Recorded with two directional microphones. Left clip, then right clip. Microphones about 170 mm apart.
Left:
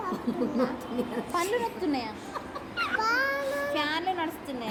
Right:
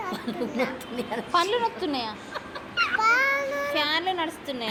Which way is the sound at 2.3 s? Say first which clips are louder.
Right 6 dB; 40° left (ahead or behind).